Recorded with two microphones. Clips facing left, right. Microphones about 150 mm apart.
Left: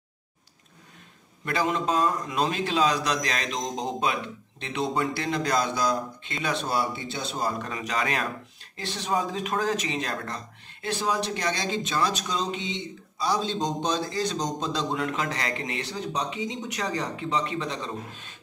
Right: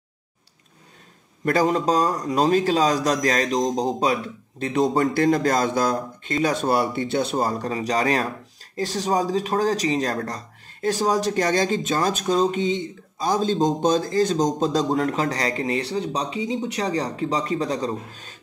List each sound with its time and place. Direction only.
1.4 s a man's voice: 40° right (ahead or behind); by 7.4 s 60° right (ahead or behind)
7.4 s speech: 35° right (ahead or behind)